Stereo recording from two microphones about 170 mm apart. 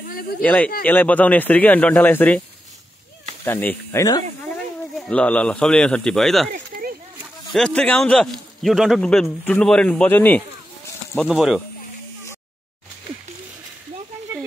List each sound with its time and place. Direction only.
0.4 s speech: 10° left (ahead or behind)
3.4 s speech: 15° left (ahead or behind)
4.9 s a man's voice: 5° left (ahead or behind)
6.5 s a sound: 60° right (ahead or behind)
7.5 s a man's voice: 5° left (ahead or behind)